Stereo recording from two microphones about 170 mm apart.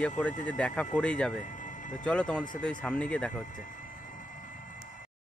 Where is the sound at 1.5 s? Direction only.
50° left (ahead or behind).